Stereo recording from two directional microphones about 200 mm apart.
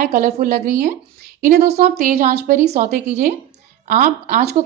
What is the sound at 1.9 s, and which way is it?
Speech, 45° right (ahead or behind).